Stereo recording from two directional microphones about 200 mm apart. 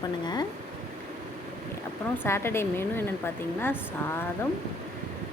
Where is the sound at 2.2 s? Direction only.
10° left (ahead or behind).